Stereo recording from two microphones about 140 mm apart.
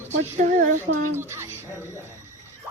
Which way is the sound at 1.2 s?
20° right (ahead or behind).